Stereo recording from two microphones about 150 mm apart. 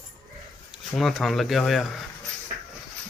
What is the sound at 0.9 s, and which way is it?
Speech, centre (ahead or behind).